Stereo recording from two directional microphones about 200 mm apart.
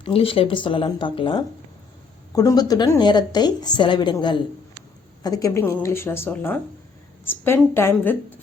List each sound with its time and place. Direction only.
0.0 s a woman's voice: 30° left (ahead or behind); by 8.2 s 10° left (ahead or behind)